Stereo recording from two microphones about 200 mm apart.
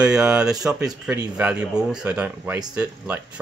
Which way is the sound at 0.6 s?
15° right (ahead or behind).